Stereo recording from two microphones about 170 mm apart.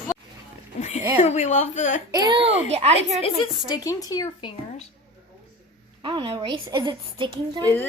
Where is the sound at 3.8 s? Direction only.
20° left (ahead or behind).